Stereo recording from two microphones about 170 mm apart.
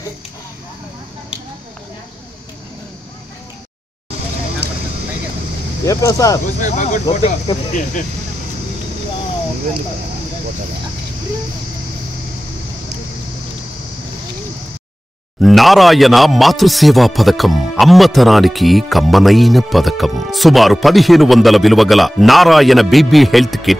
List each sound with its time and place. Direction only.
4.6 s vehicle: 75° right (ahead or behind)
5.9 s speech: 20° left (ahead or behind)
6.4 s speech: 45° left (ahead or behind)
15.4 s speech: centre (ahead or behind)